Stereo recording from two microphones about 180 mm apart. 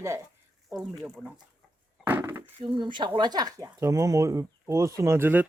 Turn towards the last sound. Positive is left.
turn(degrees=-10)  # may be behind; listen again after turning